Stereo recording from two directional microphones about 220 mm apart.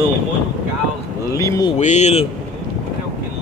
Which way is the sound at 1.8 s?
30° left (ahead or behind).